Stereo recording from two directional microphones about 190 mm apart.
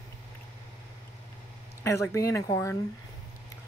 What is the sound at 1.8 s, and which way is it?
Speech, 15° left (ahead or behind).